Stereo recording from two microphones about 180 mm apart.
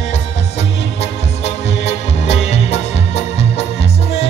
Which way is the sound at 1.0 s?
35° left (ahead or behind).